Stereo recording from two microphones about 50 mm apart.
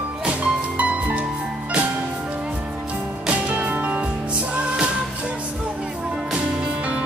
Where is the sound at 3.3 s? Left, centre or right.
Right.